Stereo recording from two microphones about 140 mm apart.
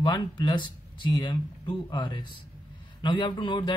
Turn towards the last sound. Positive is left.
turn(degrees=35)  # may be behind; listen again after turning